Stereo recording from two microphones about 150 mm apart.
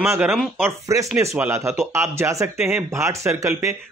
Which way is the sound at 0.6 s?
20° right (ahead or behind).